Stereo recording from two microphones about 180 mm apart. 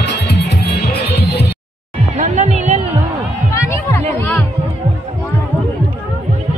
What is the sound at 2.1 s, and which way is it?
Music, 40° right (ahead or behind).